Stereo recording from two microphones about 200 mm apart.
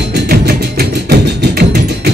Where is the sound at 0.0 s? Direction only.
60° right (ahead or behind).